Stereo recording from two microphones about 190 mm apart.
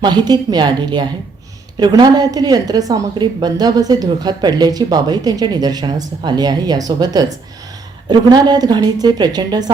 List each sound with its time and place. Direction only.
0.0 s a woman's voice: 20° right (ahead or behind)